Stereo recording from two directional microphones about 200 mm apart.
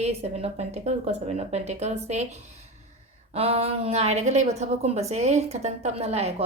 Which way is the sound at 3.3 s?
30° right (ahead or behind).